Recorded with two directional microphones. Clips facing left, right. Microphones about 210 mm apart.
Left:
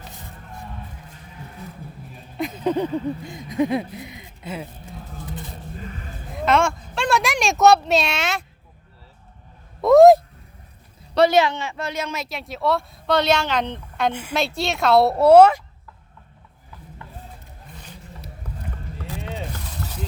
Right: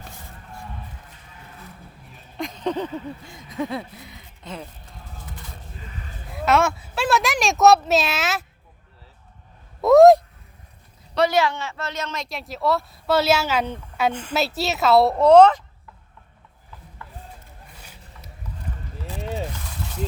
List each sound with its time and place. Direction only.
2.4 s a sound: 5° left (ahead or behind)
6.3 s a child's voice: 5° right (ahead or behind)
9.8 s speech: centre (ahead or behind)
11.1 s speech: 30° left (ahead or behind)
11.3 s speech: 20° left (ahead or behind); by 14.1 s 5° right (ahead or behind)
14.1 s a woman's voice: 10° left (ahead or behind)
14.3 s speech: 5° right (ahead or behind)
17.0 s a sound: 20° left (ahead or behind)